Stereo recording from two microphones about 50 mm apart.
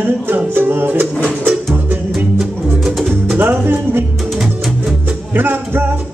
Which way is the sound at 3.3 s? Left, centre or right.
Right.